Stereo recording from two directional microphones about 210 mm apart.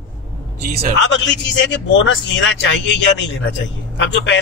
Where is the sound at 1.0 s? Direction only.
60° left (ahead or behind).